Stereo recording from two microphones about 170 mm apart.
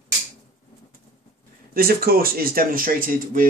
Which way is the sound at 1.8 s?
60° right (ahead or behind).